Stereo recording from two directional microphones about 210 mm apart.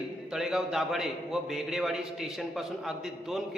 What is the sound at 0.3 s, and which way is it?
A man's voice, centre (ahead or behind).